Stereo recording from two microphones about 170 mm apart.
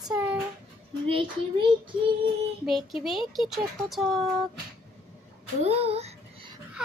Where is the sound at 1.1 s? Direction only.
30° right (ahead or behind).